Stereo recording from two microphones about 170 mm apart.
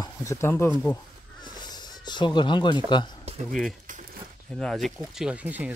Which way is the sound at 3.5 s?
Centre (ahead or behind).